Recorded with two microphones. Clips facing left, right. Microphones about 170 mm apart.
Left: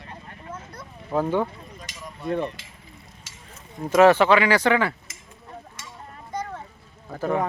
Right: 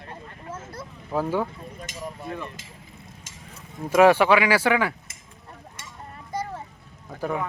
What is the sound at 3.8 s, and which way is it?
Speech, 10° right (ahead or behind).